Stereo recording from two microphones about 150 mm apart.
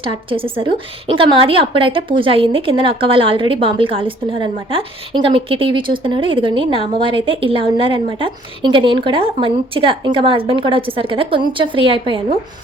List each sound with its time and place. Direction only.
0.0 s a woman's voice: 35° right (ahead or behind)